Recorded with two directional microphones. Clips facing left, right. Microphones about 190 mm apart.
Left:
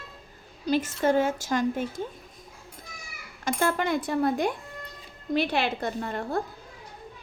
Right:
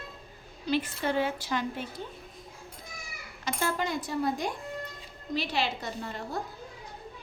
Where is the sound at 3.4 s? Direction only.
55° left (ahead or behind).